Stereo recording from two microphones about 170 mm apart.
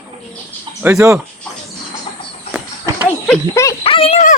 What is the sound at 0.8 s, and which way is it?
Speech, 15° right (ahead or behind).